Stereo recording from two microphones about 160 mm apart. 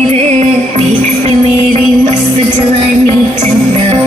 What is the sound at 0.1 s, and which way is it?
Music, 40° right (ahead or behind).